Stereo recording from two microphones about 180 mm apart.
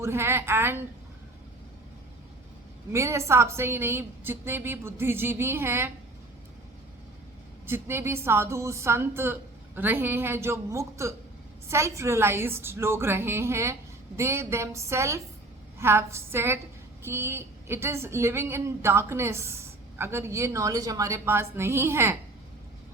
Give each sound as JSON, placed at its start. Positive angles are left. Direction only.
{"t": 0.0, "sound": "a woman's voice", "side_deg": -15}
{"t": 2.9, "sound": "a woman's voice", "side_deg": -15}
{"t": 7.7, "sound": "a woman's voice", "side_deg": -15}